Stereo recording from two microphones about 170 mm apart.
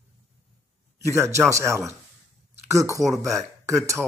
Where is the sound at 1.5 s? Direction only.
15° right (ahead or behind).